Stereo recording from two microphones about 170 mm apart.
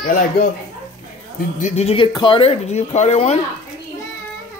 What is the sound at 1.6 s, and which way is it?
Speech, 40° left (ahead or behind).